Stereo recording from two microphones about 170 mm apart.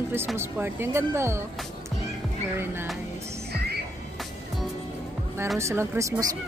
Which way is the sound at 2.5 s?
15° right (ahead or behind).